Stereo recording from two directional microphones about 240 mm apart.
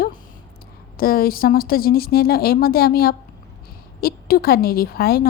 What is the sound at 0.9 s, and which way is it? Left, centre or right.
A woman's voice, left.